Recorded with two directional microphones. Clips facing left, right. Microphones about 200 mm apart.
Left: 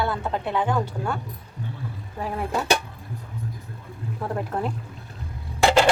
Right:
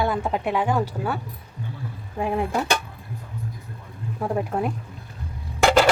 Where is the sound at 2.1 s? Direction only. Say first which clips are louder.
Right 6 dB; 20° right (ahead or behind).